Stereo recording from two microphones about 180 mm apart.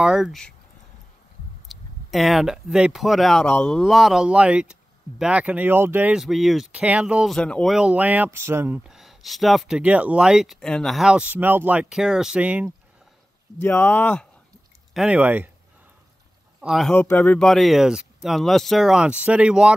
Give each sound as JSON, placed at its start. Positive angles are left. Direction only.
{"t": 0.0, "sound": "speech", "side_deg": -5}
{"t": 1.7, "sound": "speech", "side_deg": 0}
{"t": 13.6, "sound": "speech", "side_deg": 10}
{"t": 15.0, "sound": "speech", "side_deg": -5}
{"t": 16.6, "sound": "speech", "side_deg": 0}
{"t": 16.9, "sound": "speech", "side_deg": 10}